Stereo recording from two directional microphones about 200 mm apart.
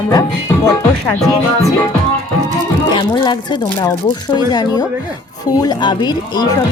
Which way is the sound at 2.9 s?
25° left (ahead or behind).